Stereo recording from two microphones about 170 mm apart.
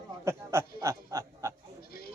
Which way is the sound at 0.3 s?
15° right (ahead or behind).